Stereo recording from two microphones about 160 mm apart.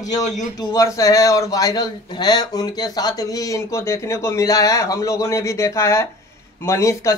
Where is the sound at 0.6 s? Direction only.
25° left (ahead or behind).